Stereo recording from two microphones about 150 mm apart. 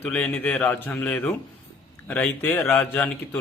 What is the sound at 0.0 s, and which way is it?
Speech, 10° left (ahead or behind).